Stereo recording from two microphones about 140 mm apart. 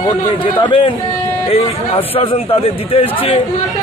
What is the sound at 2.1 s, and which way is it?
A man's voice, 45° left (ahead or behind).